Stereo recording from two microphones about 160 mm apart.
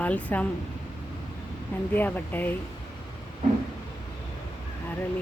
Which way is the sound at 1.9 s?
10° left (ahead or behind).